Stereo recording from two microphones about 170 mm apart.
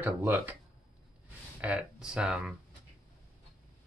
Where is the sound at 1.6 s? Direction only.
5° right (ahead or behind).